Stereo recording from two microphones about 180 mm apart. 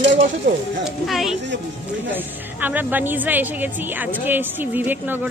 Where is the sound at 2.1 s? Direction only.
10° right (ahead or behind).